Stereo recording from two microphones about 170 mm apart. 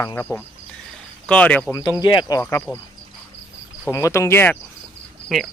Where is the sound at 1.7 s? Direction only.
25° left (ahead or behind).